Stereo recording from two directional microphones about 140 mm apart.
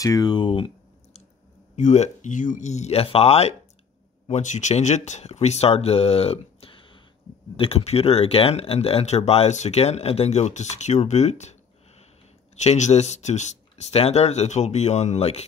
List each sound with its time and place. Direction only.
0.0 s speech: 25° left (ahead or behind)
1.8 s speech: 60° left (ahead or behind)
4.3 s speech: 60° left (ahead or behind)
12.6 s speech: 55° left (ahead or behind)